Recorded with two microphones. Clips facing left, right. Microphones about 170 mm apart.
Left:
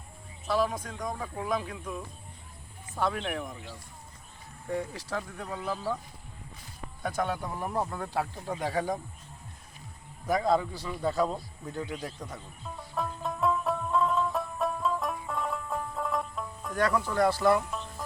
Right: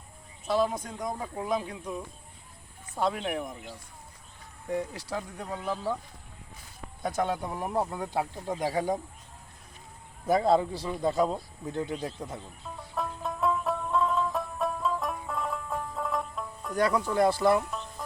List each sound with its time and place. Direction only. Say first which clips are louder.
0.4 s speech: right 1 dB; 20° right (ahead or behind)
5.1 s speech: even; 20° right (ahead or behind)
7.0 s speech: right 2 dB; 20° right (ahead or behind)
10.2 s speech: right 3 dB; 30° right (ahead or behind)
12.7 s music: even; centre (ahead or behind)
16.7 s speech: right 2 dB; 10° right (ahead or behind)
17.6 s music: right 1 dB; centre (ahead or behind)